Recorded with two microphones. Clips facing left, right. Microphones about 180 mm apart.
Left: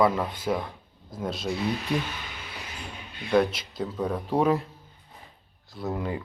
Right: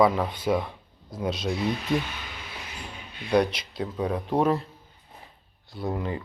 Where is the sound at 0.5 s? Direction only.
Centre (ahead or behind).